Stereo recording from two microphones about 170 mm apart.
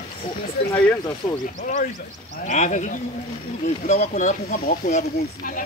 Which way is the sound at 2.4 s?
45° left (ahead or behind).